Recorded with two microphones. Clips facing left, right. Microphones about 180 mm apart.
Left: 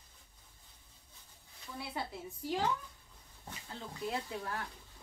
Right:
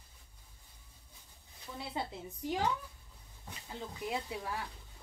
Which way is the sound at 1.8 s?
20° right (ahead or behind).